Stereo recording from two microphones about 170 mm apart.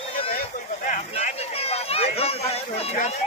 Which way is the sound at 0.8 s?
45° left (ahead or behind).